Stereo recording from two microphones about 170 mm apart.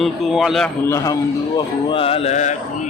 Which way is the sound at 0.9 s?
20° left (ahead or behind).